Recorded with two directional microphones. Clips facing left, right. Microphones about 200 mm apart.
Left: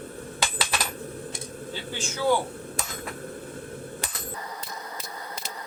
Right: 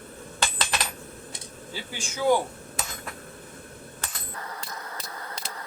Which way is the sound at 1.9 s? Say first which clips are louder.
Right 1 dB; 15° right (ahead or behind).